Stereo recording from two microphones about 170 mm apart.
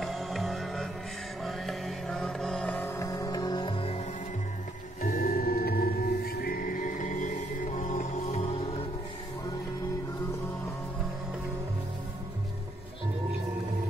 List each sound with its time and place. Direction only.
0.0 s music: centre (ahead or behind); by 4.0 s 35° left (ahead or behind)
5.0 s music: 55° left (ahead or behind); by 8.5 s 40° left (ahead or behind)